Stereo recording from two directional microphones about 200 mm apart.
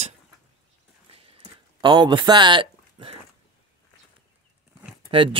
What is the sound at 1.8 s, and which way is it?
Speech, 20° right (ahead or behind).